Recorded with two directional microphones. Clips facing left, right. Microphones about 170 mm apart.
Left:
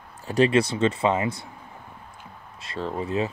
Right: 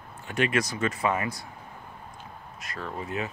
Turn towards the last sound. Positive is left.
turn(degrees=30)  # may be behind; listen again after turning